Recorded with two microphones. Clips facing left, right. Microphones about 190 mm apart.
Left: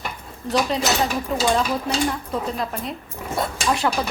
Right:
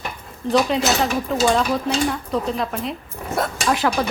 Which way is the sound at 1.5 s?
Centre (ahead or behind).